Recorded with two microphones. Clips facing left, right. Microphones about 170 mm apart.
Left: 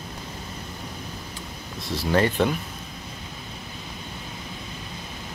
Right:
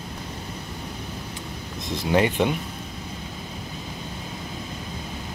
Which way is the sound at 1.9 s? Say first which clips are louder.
Right 1 dB; 15° right (ahead or behind).